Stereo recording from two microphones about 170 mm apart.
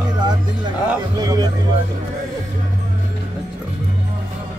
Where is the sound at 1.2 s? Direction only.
20° right (ahead or behind).